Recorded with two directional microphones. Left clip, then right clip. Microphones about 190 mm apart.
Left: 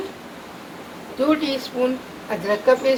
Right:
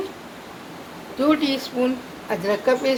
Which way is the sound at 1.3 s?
50° right (ahead or behind).